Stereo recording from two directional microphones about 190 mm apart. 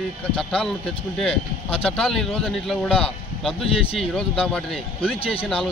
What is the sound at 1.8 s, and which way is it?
Speech, 5° left (ahead or behind).